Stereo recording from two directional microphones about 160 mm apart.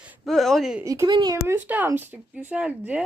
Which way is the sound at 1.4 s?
15° right (ahead or behind).